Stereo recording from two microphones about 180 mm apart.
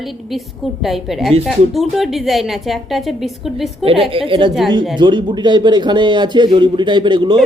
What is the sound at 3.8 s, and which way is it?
A woman's voice, 30° right (ahead or behind).